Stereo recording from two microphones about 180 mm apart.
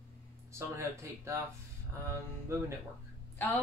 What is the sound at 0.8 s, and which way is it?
Speech, 15° right (ahead or behind).